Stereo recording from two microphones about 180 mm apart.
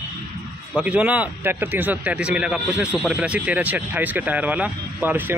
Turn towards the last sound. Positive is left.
turn(degrees=-10)  # may be behind; listen again after turning